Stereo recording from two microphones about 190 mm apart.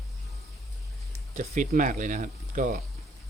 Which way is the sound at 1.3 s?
40° right (ahead or behind).